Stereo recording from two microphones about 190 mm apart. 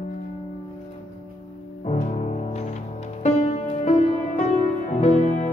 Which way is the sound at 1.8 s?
35° left (ahead or behind).